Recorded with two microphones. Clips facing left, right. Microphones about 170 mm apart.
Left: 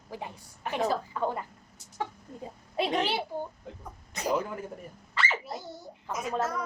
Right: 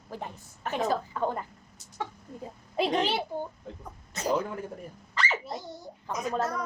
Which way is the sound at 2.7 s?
Centre (ahead or behind).